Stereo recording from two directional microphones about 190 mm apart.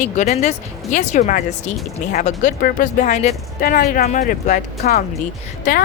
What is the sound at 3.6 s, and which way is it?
Speech, 50° left (ahead or behind).